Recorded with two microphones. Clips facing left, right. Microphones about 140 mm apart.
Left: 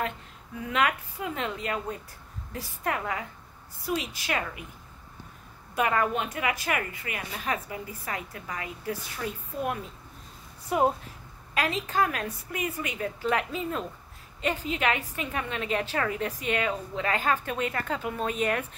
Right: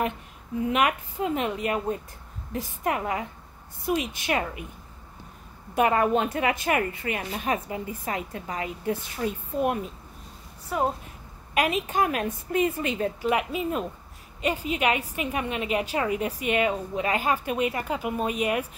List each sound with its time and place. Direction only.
0.6 s a woman's voice: 20° right (ahead or behind)
5.8 s a woman's voice: 25° right (ahead or behind)
10.7 s a woman's voice: 15° left (ahead or behind)
11.5 s a woman's voice: 20° right (ahead or behind)
13.2 s a woman's voice: 15° right (ahead or behind)